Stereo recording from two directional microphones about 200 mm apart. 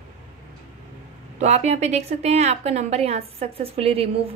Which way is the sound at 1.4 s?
35° right (ahead or behind).